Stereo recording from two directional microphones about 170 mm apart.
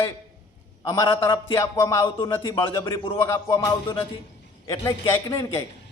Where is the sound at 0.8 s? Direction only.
20° left (ahead or behind).